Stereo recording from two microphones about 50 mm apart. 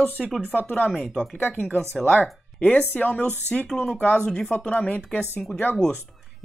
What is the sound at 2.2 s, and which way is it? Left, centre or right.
Speech, left.